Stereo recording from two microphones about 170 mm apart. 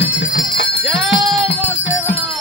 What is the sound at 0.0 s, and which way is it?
Bell, 90° left.